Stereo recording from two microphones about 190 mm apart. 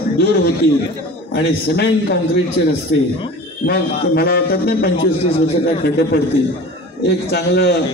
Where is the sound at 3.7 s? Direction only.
55° left (ahead or behind).